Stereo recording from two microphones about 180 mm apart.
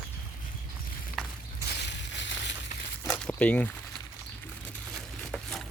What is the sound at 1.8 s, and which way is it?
Crushing, 75° left (ahead or behind).